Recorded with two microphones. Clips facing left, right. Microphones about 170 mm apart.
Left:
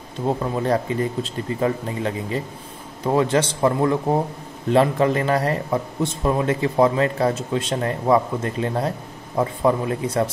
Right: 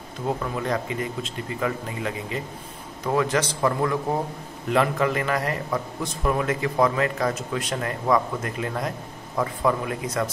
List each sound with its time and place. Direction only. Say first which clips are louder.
0.4 s a man's voice: left 5 dB; 35° left (ahead or behind)